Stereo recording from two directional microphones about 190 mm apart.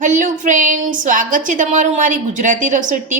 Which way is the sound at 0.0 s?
45° right (ahead or behind).